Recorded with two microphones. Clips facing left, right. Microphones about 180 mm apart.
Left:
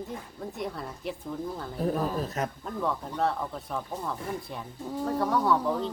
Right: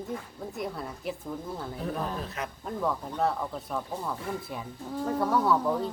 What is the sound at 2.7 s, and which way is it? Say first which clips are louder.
Speech: even; centre (ahead or behind).